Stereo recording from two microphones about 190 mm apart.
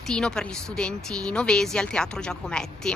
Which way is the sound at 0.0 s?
5° left (ahead or behind).